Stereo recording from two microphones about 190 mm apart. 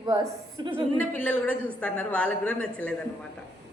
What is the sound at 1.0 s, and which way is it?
A woman's voice, 5° left (ahead or behind).